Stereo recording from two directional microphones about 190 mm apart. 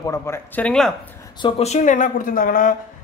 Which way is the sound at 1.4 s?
35° left (ahead or behind).